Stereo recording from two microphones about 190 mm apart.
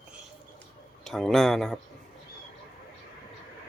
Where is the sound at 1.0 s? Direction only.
Centre (ahead or behind).